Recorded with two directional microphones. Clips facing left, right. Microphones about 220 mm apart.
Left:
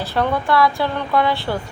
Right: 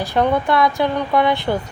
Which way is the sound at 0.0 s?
15° right (ahead or behind).